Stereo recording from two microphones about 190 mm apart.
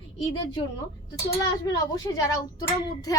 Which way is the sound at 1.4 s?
20° left (ahead or behind).